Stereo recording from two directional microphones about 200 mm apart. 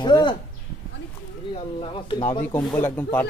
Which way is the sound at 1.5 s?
25° left (ahead or behind).